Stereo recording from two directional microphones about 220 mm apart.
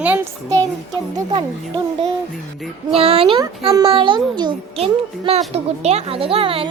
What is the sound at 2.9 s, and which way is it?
A child's voice, 25° right (ahead or behind).